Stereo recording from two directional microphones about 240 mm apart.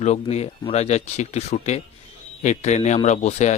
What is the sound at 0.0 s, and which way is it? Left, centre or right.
Speech, left.